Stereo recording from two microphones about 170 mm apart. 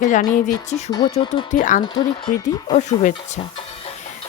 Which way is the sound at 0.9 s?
25° left (ahead or behind).